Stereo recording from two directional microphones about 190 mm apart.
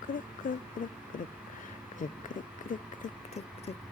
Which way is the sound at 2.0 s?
45° left (ahead or behind).